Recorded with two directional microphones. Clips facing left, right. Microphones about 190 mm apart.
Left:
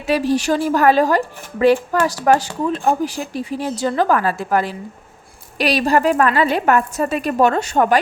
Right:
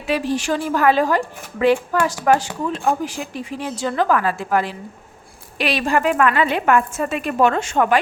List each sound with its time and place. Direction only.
0.1 s a woman's voice: 40° left (ahead or behind)